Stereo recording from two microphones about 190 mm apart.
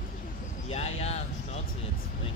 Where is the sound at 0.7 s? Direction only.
35° left (ahead or behind).